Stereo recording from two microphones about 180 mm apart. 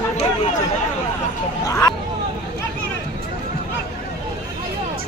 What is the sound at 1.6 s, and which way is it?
Hubbub, 15° left (ahead or behind).